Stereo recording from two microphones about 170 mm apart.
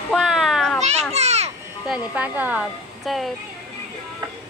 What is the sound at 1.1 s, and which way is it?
Children playing, 40° right (ahead or behind).